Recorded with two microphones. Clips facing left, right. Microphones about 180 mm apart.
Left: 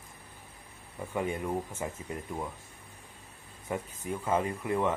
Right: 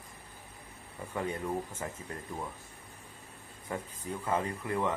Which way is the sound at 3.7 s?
15° left (ahead or behind).